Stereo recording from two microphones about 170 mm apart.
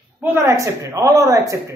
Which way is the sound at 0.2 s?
15° right (ahead or behind).